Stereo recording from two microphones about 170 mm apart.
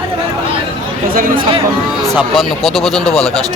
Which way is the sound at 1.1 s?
55° right (ahead or behind).